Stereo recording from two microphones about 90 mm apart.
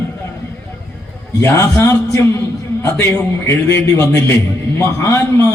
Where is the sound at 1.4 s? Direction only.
30° left (ahead or behind).